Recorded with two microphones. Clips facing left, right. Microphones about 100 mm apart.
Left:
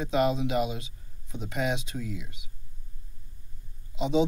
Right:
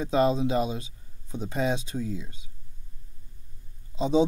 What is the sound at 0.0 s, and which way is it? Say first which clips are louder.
A man's voice: right 2 dB; 35° right (ahead or behind).